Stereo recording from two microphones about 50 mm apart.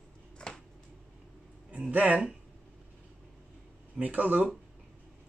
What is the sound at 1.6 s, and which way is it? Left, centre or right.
Speech, right.